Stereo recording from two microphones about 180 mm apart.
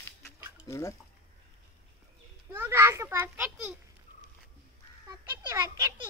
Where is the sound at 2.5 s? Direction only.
15° right (ahead or behind).